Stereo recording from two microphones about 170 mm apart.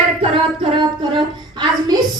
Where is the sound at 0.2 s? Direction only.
35° right (ahead or behind).